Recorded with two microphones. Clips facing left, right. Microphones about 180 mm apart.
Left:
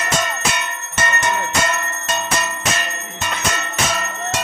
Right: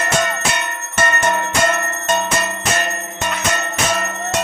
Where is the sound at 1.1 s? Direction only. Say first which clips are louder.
Right 1 dB; 50° right (ahead or behind).